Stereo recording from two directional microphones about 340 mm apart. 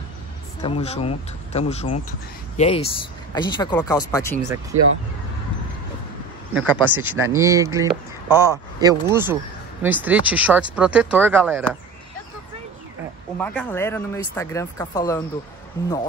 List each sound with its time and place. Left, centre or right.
0.6 s speech: centre
4.7 s speech: right
6.5 s speech: centre
13.4 s speech: centre